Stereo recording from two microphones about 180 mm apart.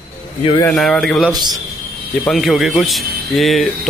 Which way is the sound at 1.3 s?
20° right (ahead or behind).